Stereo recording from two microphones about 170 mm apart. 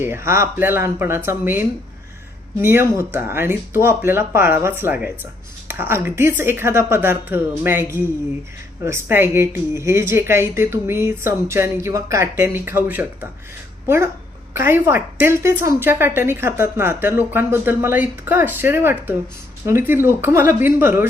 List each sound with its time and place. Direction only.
0.0 s a woman's voice: 15° right (ahead or behind)